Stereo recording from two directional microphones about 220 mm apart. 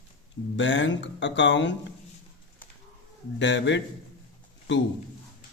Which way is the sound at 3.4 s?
55° left (ahead or behind).